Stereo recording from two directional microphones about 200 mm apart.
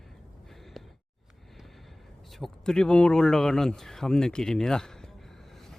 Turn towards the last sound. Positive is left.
turn(degrees=5)  # may be behind; listen again after turning